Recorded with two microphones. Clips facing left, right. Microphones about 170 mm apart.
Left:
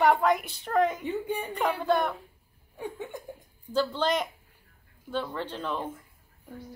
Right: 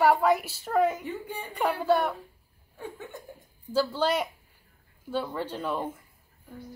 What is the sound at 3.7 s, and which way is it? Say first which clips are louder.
A woman's voice: right 1 dB; 10° right (ahead or behind).